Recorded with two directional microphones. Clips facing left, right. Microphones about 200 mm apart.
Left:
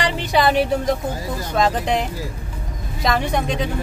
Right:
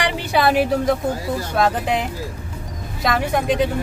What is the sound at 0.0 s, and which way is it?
Music, 10° right (ahead or behind).